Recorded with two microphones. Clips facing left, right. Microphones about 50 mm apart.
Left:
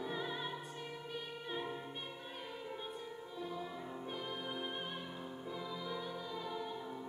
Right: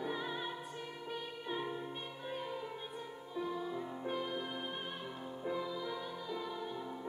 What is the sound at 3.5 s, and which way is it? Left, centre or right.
Music, centre.